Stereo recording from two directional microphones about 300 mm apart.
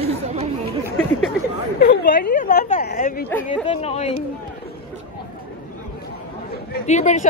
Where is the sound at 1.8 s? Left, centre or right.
Left.